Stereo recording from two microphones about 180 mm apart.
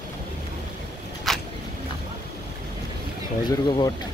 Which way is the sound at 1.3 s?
Centre (ahead or behind).